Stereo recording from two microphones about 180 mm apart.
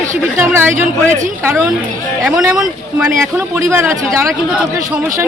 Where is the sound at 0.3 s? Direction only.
15° right (ahead or behind).